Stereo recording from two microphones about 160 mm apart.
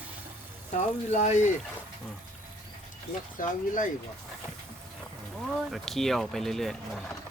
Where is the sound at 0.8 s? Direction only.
50° left (ahead or behind).